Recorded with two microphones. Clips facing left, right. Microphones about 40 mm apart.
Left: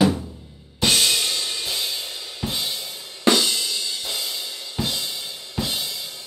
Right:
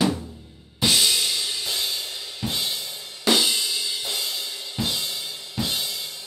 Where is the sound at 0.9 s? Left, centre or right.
Left.